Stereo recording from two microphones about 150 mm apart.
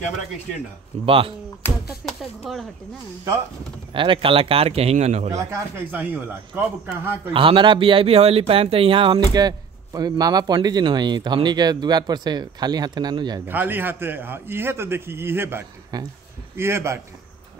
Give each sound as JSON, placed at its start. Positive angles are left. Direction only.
{"t": 1.0, "sound": "speech", "side_deg": -35}
{"t": 1.6, "sound": "a sound", "side_deg": 15}
{"t": 2.0, "sound": "speech", "side_deg": 0}
{"t": 3.9, "sound": "speech", "side_deg": -35}
{"t": 5.5, "sound": "a man's voice", "side_deg": -15}
{"t": 7.3, "sound": "speech", "side_deg": -35}
{"t": 13.5, "sound": "a man's voice", "side_deg": -15}
{"t": 15.9, "sound": "a man's voice", "side_deg": -25}